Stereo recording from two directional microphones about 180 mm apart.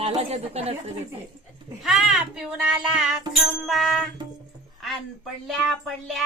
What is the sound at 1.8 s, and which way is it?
Music, centre (ahead or behind).